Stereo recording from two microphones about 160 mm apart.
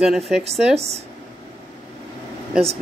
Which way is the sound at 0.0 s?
5° right (ahead or behind).